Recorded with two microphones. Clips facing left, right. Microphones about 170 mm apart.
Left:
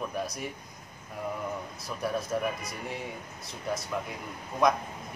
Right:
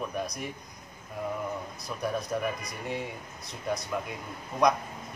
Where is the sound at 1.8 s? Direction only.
Centre (ahead or behind).